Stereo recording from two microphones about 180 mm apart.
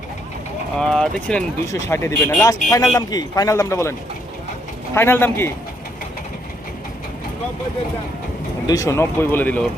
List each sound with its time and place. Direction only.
0.8 s speech: 5° left (ahead or behind)
1.6 s a man's voice: 15° left (ahead or behind)
4.9 s a man's voice: 15° left (ahead or behind)
8.6 s a man's voice: 20° left (ahead or behind)